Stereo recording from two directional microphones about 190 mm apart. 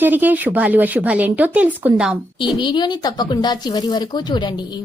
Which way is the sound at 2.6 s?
25° left (ahead or behind).